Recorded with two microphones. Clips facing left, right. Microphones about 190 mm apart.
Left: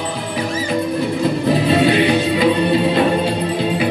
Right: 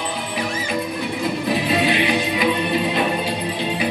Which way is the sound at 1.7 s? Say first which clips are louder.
Left 6 dB; 35° left (ahead or behind).